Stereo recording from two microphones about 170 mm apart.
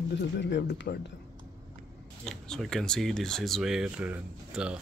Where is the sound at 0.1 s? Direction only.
90° left.